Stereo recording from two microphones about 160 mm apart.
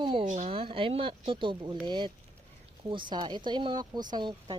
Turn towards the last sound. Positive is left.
turn(degrees=-25)  # may be behind; listen again after turning